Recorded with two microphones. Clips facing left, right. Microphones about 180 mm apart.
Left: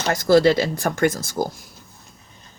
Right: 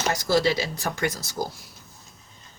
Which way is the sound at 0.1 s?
55° left (ahead or behind).